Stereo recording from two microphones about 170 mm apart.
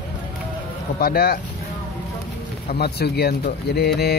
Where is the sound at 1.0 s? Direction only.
65° left (ahead or behind).